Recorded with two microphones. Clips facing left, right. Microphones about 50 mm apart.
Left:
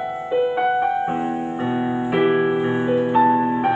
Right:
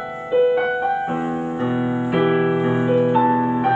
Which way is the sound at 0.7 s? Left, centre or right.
Centre.